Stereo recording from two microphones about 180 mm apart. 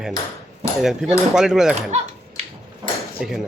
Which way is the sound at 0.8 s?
Centre (ahead or behind).